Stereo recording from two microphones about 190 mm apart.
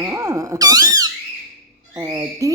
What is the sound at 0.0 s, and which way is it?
A woman's voice, 15° right (ahead or behind).